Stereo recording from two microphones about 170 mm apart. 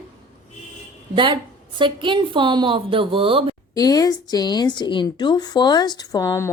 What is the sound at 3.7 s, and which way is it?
Speech, 20° left (ahead or behind).